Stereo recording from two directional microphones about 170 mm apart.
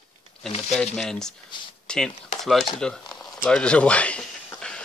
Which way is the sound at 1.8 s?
5° left (ahead or behind).